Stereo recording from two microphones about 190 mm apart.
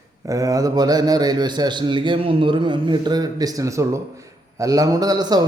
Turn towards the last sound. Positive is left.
turn(degrees=-20)  # may be behind; listen again after turning